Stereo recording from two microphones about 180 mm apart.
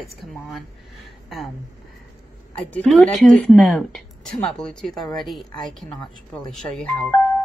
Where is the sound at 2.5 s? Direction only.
5° left (ahead or behind).